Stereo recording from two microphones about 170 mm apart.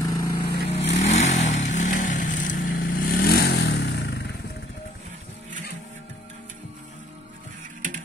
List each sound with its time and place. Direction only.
0.0 s vehicle: 20° left (ahead or behind)
0.7 s vehicle: 40° left (ahead or behind); by 4.3 s 75° left (ahead or behind)